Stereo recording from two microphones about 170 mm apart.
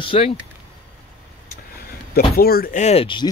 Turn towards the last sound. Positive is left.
turn(degrees=30)  # may be behind; listen again after turning